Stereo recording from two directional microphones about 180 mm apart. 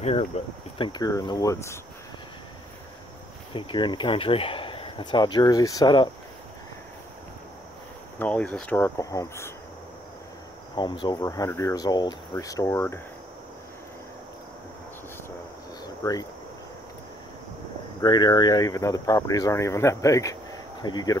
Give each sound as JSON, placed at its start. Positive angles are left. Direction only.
{"t": 0.0, "sound": "speech", "side_deg": 35}
{"t": 0.7, "sound": "speech", "side_deg": 25}
{"t": 3.5, "sound": "speech", "side_deg": 25}
{"t": 8.2, "sound": "speech", "side_deg": 10}
{"t": 10.8, "sound": "speech", "side_deg": 25}
{"t": 15.8, "sound": "a sound", "side_deg": 20}
{"t": 18.0, "sound": "speech", "side_deg": 25}